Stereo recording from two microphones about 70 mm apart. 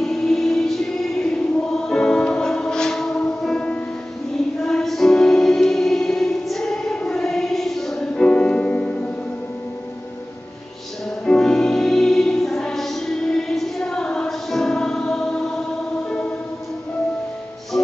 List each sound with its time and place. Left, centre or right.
0.0 s music: centre
8.3 s music: centre
11.2 s music: centre